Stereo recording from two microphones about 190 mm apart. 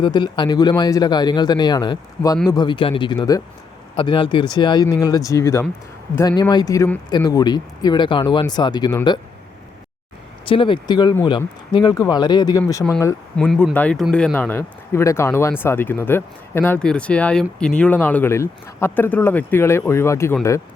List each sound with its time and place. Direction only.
0.0 s speech: 25° left (ahead or behind)
10.4 s speech: 25° left (ahead or behind)
13.3 s speech: 5° left (ahead or behind)